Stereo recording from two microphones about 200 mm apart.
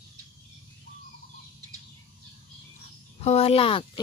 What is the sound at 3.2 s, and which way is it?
Speech, 30° left (ahead or behind).